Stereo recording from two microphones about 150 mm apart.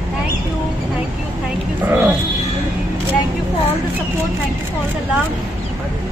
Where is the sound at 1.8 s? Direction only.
10° right (ahead or behind).